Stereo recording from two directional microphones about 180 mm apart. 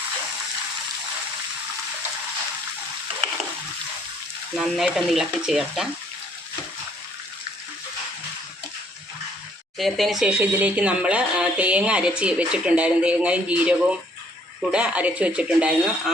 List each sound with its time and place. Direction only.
4.5 s speech: centre (ahead or behind)
9.7 s speech: centre (ahead or behind)